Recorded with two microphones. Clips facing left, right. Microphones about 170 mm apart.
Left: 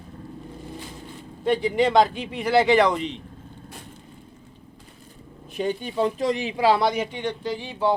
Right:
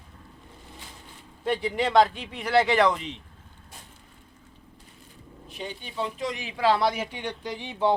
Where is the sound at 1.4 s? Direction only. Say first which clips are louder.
Left 5 dB; centre (ahead or behind).